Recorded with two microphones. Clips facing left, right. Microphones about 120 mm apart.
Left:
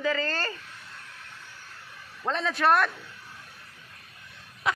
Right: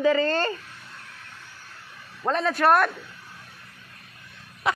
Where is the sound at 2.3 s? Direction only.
5° right (ahead or behind).